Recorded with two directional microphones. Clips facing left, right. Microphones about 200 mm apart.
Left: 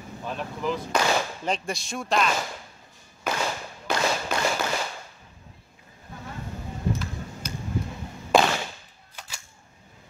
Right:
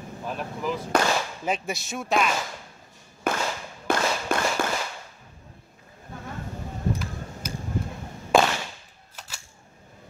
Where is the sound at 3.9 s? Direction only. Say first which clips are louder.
Right 3 dB; 50° right (ahead or behind).